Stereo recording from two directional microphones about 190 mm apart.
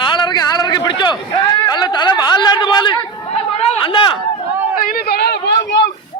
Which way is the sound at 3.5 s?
30° left (ahead or behind).